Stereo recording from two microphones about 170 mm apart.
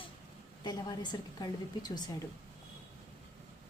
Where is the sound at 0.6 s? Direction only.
25° left (ahead or behind).